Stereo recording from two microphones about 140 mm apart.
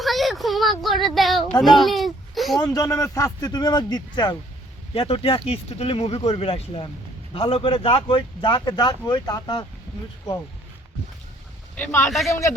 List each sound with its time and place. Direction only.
0.0 s a sound: centre (ahead or behind)
2.6 s a man's voice: 20° left (ahead or behind)
11.8 s speech: 15° left (ahead or behind)